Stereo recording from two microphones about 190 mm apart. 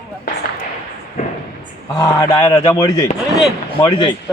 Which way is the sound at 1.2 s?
40° left (ahead or behind).